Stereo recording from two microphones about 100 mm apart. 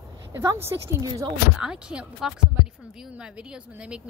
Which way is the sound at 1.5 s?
10° right (ahead or behind).